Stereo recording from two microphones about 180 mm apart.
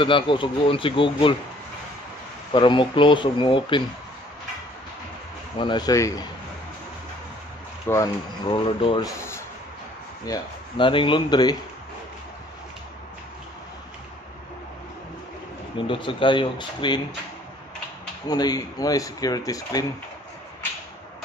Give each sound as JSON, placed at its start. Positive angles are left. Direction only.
{"t": 0.0, "sound": "speech", "side_deg": 30}
{"t": 2.5, "sound": "speech", "side_deg": 25}
{"t": 5.6, "sound": "speech", "side_deg": 25}
{"t": 7.8, "sound": "speech", "side_deg": 20}
{"t": 10.2, "sound": "speech", "side_deg": 25}
{"t": 15.9, "sound": "speech", "side_deg": 30}
{"t": 18.2, "sound": "speech", "side_deg": 20}